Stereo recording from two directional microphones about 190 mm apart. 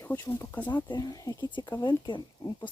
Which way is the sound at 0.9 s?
20° left (ahead or behind).